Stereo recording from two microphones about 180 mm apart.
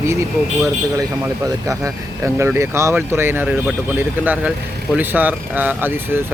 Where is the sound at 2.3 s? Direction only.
15° right (ahead or behind).